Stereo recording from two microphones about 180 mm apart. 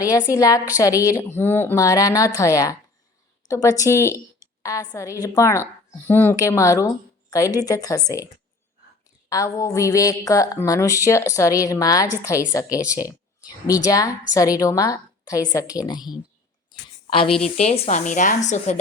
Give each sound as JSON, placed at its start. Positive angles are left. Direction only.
{"t": 0.0, "sound": "a woman's voice", "side_deg": 20}
{"t": 9.3, "sound": "a woman's voice", "side_deg": 20}
{"t": 16.7, "sound": "a sound", "side_deg": 30}
{"t": 17.2, "sound": "a woman's voice", "side_deg": 5}
{"t": 17.6, "sound": "a woman's voice", "side_deg": 35}